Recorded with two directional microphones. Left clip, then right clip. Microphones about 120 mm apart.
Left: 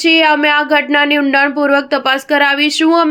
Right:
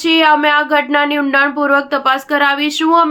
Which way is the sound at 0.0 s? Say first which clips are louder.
Left 1 dB; 30° left (ahead or behind).